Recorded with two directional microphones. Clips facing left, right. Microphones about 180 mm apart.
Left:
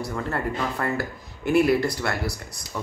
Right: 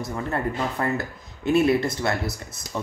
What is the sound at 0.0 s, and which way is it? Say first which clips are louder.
Speech: right 1 dB; 20° right (ahead or behind).